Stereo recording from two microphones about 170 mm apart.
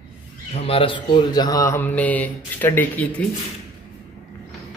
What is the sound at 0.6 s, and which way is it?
Speech, 35° left (ahead or behind).